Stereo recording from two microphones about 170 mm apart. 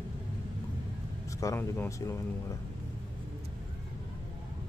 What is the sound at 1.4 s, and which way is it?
Speech, 15° left (ahead or behind).